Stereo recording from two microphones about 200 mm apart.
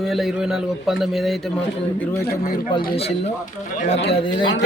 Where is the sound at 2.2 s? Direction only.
50° left (ahead or behind).